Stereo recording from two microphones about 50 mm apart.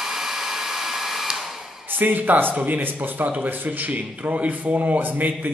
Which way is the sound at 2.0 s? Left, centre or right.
Right.